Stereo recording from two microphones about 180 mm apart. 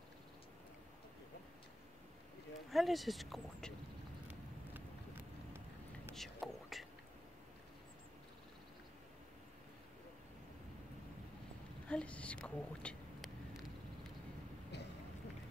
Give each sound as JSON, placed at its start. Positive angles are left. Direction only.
{"t": 2.7, "sound": "speech", "side_deg": 0}
{"t": 6.0, "sound": "whispering", "side_deg": 0}
{"t": 11.9, "sound": "whispering", "side_deg": 5}
{"t": 14.7, "sound": "a sound", "side_deg": 70}